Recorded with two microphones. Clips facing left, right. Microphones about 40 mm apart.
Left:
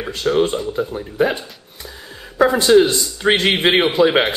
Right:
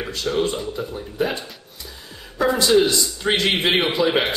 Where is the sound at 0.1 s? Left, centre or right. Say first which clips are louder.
Left 6 dB; left.